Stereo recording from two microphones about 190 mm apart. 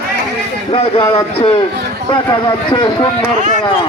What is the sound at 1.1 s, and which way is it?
A man's voice, 30° left (ahead or behind).